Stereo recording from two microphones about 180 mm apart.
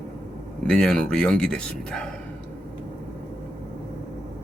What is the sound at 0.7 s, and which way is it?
Speech, 5° left (ahead or behind).